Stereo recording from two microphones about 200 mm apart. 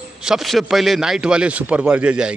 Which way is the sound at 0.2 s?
Centre (ahead or behind).